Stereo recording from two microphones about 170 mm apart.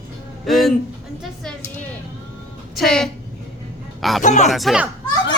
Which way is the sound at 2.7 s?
Centre (ahead or behind).